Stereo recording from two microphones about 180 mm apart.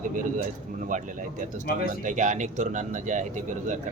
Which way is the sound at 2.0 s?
45° right (ahead or behind).